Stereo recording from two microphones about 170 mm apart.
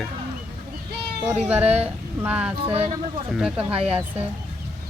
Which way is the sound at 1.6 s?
40° right (ahead or behind).